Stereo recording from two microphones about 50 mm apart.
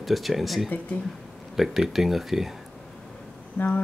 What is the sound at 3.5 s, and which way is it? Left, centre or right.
Speech, left.